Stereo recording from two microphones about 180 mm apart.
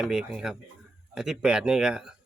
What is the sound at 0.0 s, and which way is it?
Speech, 5° right (ahead or behind).